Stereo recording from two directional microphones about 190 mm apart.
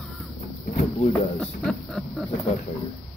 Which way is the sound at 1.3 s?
Centre (ahead or behind).